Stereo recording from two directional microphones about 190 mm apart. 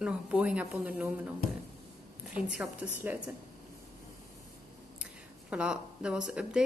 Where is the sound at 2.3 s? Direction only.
5° right (ahead or behind).